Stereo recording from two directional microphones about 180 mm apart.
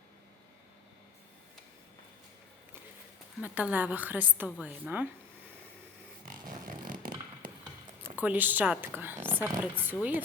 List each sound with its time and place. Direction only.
3.4 s a woman's voice: 10° right (ahead or behind)
6.7 s a sound: 50° right (ahead or behind)
8.0 s a woman's voice: 10° right (ahead or behind)